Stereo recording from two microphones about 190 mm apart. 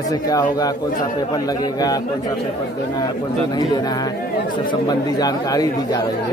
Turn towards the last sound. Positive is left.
turn(degrees=20)  # may be behind; listen again after turning